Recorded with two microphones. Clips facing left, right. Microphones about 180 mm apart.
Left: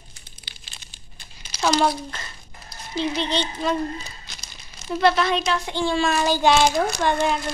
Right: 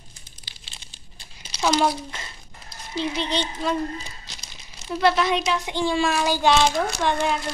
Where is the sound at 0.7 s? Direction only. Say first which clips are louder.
Even; 30° right (ahead or behind).